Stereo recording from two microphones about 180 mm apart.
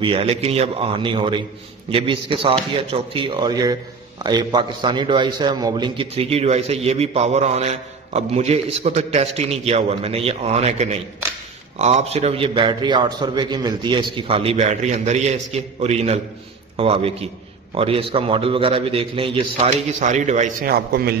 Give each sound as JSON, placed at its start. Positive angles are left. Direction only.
{"t": 0.0, "sound": "a man's voice", "side_deg": -30}
{"t": 20.7, "sound": "a man's voice", "side_deg": -60}